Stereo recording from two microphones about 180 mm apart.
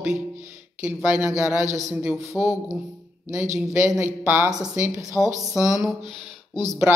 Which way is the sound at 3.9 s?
10° right (ahead or behind).